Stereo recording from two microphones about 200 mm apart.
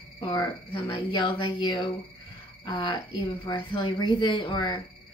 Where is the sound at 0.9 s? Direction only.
25° left (ahead or behind).